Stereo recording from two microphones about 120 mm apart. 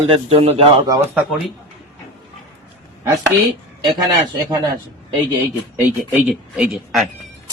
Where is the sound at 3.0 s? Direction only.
25° right (ahead or behind).